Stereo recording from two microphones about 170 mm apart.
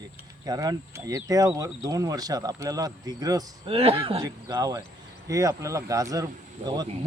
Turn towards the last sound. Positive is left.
turn(degrees=-25)  # may be behind; listen again after turning